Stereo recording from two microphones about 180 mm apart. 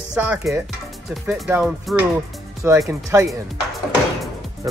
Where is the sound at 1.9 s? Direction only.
Centre (ahead or behind).